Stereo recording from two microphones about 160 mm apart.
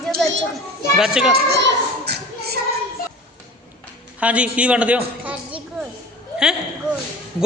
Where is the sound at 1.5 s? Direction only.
90° right.